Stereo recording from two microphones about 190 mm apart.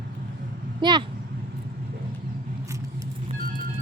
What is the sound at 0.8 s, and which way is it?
Speech, 25° right (ahead or behind).